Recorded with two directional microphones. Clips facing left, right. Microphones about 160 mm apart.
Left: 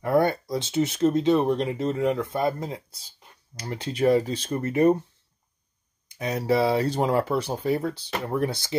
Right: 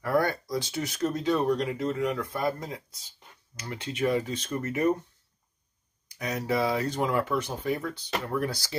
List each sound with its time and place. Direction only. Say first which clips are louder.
0.0 s speech: left 4 dB; 25° left (ahead or behind)
6.0 s speech: left 5 dB; 30° left (ahead or behind)